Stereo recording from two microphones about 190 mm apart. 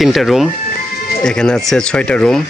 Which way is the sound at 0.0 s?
Centre (ahead or behind).